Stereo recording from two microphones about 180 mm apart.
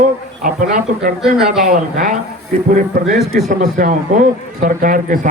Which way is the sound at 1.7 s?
50° right (ahead or behind).